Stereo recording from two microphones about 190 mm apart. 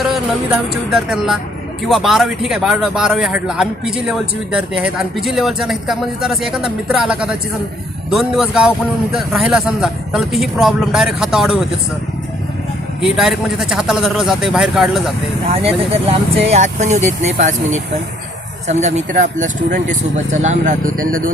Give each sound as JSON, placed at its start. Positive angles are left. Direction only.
{"t": 0.1, "sound": "a man's voice", "side_deg": -5}
{"t": 13.0, "sound": "a man's voice", "side_deg": 0}
{"t": 15.4, "sound": "speech", "side_deg": -30}
{"t": 18.7, "sound": "speech", "side_deg": -35}